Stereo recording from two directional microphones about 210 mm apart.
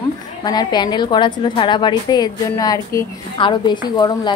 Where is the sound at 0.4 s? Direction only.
20° left (ahead or behind).